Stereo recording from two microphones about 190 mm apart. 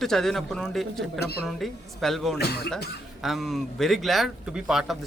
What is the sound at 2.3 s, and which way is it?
Speech, 55° left (ahead or behind).